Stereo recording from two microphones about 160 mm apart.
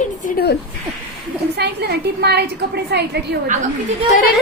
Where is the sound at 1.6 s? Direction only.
90° right.